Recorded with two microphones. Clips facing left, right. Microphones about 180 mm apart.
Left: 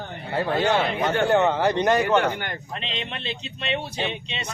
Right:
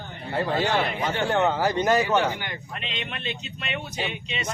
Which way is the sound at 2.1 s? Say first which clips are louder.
Left 2 dB; 55° left (ahead or behind).